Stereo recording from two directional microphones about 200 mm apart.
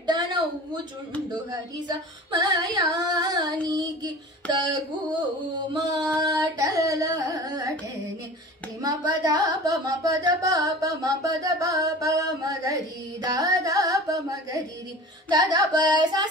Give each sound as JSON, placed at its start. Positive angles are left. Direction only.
{"t": 0.0, "sound": "a sound", "side_deg": -20}
{"t": 1.3, "sound": "child singing", "side_deg": -20}
{"t": 5.7, "sound": "carnatic music", "side_deg": -20}
{"t": 8.8, "sound": "music", "side_deg": -20}
{"t": 15.2, "sound": "child singing", "side_deg": -20}